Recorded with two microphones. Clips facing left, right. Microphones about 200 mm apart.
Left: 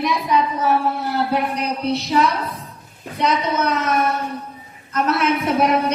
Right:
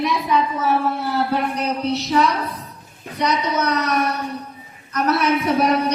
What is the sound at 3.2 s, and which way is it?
A woman's voice, 25° left (ahead or behind).